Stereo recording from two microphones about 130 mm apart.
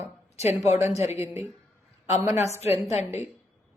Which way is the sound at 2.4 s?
55° left (ahead or behind).